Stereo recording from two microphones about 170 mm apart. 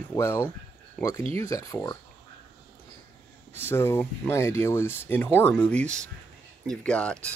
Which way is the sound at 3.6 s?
15° left (ahead or behind).